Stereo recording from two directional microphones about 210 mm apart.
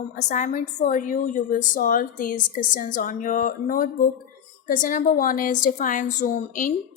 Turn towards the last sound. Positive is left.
turn(degrees=40)  # may be behind; listen again after turning